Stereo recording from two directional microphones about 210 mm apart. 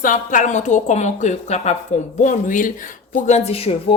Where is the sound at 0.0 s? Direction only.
40° left (ahead or behind).